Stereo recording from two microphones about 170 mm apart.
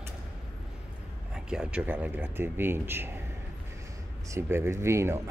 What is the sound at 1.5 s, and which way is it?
A man's voice, 5° right (ahead or behind).